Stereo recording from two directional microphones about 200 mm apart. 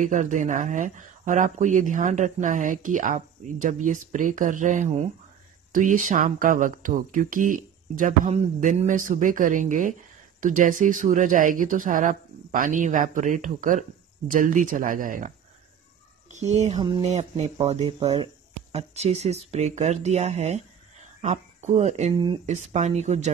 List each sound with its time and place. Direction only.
0.0 s speech: 40° right (ahead or behind)